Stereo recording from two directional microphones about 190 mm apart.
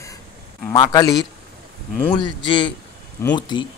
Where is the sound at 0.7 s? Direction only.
20° left (ahead or behind).